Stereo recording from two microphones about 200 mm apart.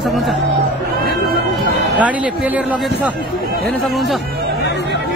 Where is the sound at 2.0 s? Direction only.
5° right (ahead or behind).